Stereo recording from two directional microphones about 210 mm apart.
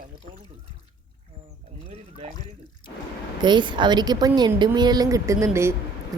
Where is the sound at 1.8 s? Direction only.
30° right (ahead or behind).